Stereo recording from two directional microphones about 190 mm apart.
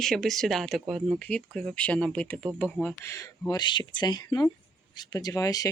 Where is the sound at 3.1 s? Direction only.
15° left (ahead or behind).